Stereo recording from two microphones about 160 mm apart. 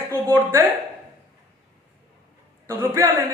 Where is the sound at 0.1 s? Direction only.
15° right (ahead or behind).